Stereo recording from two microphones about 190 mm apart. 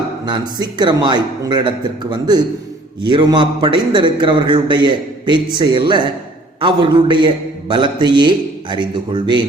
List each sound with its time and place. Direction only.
0.3 s a man's voice: 20° right (ahead or behind)